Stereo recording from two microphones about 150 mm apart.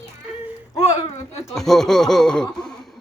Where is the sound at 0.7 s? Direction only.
25° left (ahead or behind).